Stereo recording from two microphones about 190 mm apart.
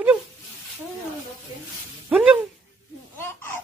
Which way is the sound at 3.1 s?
10° left (ahead or behind).